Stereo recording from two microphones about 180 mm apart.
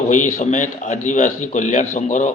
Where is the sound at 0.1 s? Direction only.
45° left (ahead or behind).